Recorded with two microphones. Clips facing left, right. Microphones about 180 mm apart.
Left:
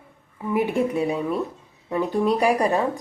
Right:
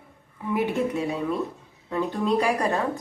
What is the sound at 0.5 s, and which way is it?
Mantra, 10° left (ahead or behind).